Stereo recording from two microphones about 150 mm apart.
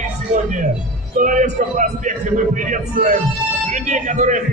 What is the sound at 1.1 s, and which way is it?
A man's voice, 60° right (ahead or behind).